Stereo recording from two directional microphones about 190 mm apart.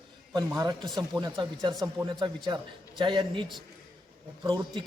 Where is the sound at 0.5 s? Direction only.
20° right (ahead or behind).